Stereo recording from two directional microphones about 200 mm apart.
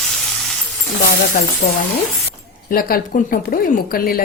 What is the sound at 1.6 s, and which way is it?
A woman's voice, 40° left (ahead or behind).